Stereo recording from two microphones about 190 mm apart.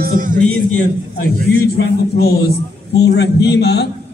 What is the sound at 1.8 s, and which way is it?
A man's voice, 55° left (ahead or behind).